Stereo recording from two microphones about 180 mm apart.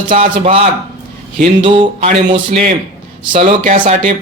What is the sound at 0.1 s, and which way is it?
Speech, 30° right (ahead or behind).